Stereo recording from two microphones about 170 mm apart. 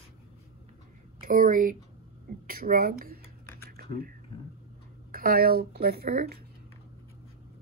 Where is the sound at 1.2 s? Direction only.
55° right (ahead or behind).